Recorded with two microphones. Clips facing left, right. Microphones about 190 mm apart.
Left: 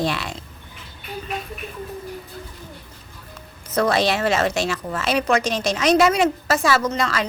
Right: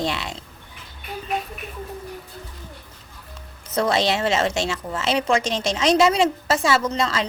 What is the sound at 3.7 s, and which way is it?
A woman's voice, 25° right (ahead or behind).